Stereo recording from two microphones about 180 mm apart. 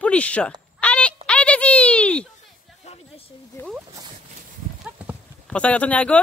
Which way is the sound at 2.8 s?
35° left (ahead or behind).